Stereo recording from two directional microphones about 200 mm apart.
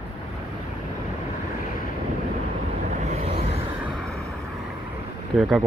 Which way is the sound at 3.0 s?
35° right (ahead or behind).